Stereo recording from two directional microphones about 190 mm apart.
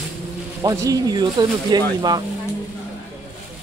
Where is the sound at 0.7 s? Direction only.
20° right (ahead or behind).